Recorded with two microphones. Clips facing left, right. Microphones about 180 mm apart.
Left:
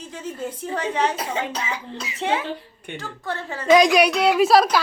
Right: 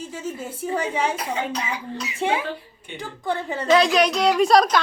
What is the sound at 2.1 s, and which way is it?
A woman's voice, 10° right (ahead or behind).